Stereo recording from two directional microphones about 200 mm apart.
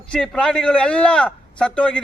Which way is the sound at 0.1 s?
5° left (ahead or behind).